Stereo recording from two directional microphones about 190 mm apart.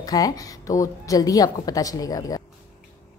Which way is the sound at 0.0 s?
20° left (ahead or behind).